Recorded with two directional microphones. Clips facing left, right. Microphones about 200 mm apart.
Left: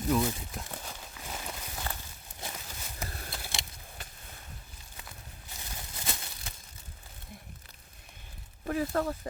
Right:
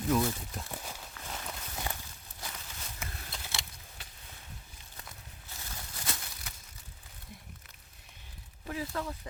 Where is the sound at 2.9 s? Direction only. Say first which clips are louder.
Left 5 dB; 40° left (ahead or behind).